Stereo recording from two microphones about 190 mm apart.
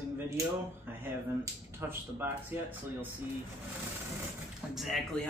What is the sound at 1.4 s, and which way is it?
Speech, 10° right (ahead or behind).